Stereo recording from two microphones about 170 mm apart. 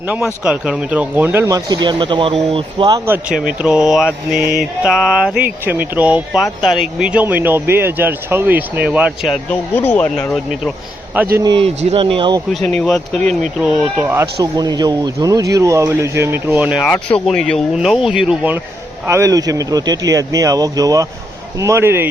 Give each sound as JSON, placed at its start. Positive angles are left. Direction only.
{"t": 0.4, "sound": "speech", "side_deg": -5}
{"t": 3.6, "sound": "speech", "side_deg": -5}
{"t": 9.7, "sound": "speech", "side_deg": 10}
{"t": 11.1, "sound": "speech", "side_deg": -10}
{"t": 11.5, "sound": "speech", "side_deg": -35}
{"t": 12.6, "sound": "speech", "side_deg": 5}
{"t": 13.6, "sound": "speech", "side_deg": -5}
{"t": 14.5, "sound": "speech", "side_deg": -25}
{"t": 16.8, "sound": "speech", "side_deg": 5}
{"t": 19.0, "sound": "speech", "side_deg": -15}